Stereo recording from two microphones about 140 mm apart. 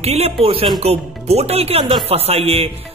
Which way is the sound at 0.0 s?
45° right (ahead or behind).